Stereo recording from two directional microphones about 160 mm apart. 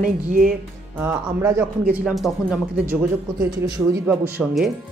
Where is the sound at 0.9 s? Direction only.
15° right (ahead or behind).